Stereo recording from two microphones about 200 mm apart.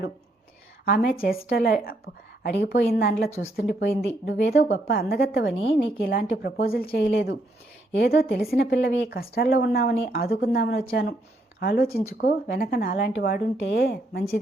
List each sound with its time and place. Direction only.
0.9 s a woman's voice: 50° left (ahead or behind)